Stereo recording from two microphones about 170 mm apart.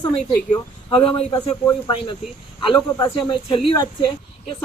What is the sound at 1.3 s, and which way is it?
Speech, 25° left (ahead or behind).